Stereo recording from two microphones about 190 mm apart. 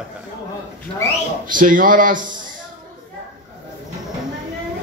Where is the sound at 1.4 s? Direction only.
45° right (ahead or behind).